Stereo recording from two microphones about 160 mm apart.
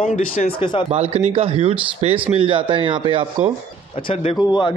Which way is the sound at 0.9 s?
40° right (ahead or behind).